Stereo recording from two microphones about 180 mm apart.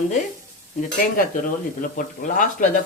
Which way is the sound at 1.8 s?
45° left (ahead or behind).